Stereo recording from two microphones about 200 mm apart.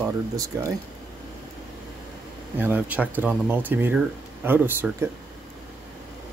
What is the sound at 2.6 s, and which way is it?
Speech, 10° right (ahead or behind).